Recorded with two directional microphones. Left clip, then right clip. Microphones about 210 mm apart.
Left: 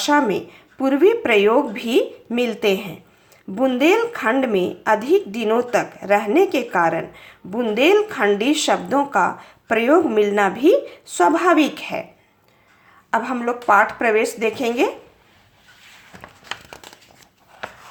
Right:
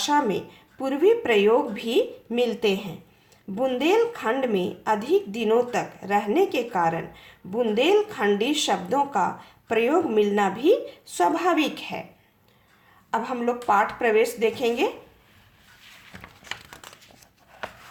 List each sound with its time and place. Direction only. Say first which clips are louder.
0.0 s a woman's voice: left 5 dB; 25° left (ahead or behind)
13.1 s a woman's voice: left 4 dB; 25° left (ahead or behind)